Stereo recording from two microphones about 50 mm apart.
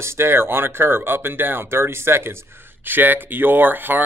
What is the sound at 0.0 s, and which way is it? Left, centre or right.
Speech, right.